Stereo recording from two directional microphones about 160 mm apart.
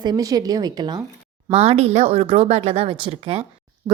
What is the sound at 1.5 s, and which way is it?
A woman's voice, 40° right (ahead or behind).